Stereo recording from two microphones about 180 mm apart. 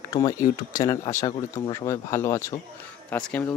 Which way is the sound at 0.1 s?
20° left (ahead or behind).